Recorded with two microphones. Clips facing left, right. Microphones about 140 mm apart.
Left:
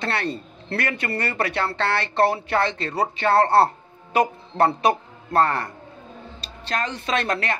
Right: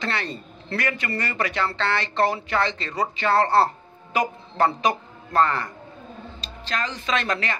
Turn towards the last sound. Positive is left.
turn(degrees=50)  # may be behind; listen again after turning